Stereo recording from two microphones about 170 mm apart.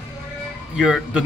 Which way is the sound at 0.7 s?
5° right (ahead or behind).